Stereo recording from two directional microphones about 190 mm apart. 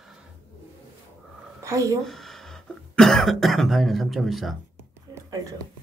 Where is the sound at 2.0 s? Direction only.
Centre (ahead or behind).